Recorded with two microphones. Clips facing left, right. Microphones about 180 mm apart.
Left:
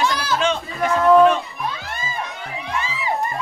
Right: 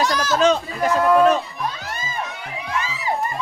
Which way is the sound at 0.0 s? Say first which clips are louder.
Right 3 dB; 40° right (ahead or behind).